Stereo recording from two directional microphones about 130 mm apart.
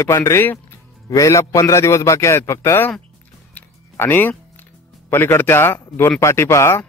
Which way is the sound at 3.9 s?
15° left (ahead or behind).